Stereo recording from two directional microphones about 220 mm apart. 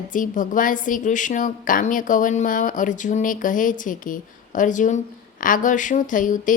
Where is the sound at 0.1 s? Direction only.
35° left (ahead or behind).